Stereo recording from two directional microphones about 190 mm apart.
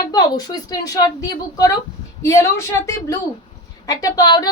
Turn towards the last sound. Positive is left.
turn(degrees=20)  # may be behind; listen again after turning